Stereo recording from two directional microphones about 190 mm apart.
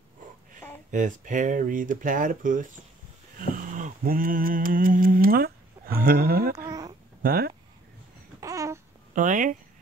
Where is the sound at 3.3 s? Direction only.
45° right (ahead or behind).